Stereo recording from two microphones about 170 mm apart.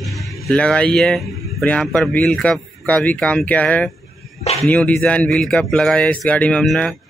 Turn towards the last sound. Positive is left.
turn(degrees=5)  # may be behind; listen again after turning